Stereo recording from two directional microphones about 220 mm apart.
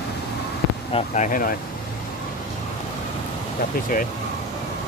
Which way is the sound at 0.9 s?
35° left (ahead or behind).